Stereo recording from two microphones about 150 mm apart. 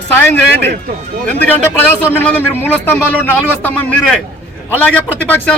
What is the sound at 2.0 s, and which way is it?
A man's voice, 15° left (ahead or behind).